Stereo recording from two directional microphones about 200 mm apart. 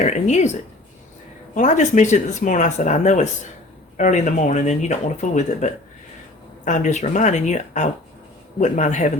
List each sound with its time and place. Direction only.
0.0 s speech: 35° left (ahead or behind)
1.5 s speech: 35° left (ahead or behind)